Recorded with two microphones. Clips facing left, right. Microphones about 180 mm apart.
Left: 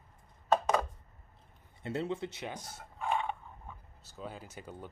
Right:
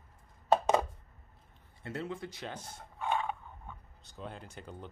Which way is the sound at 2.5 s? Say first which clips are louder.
Even; 10° left (ahead or behind).